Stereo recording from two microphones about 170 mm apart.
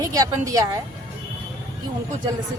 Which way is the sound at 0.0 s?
20° right (ahead or behind).